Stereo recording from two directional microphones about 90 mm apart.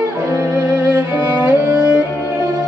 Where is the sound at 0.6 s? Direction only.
15° right (ahead or behind).